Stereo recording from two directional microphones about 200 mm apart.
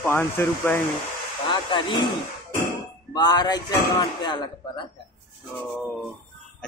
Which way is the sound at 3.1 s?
20° left (ahead or behind).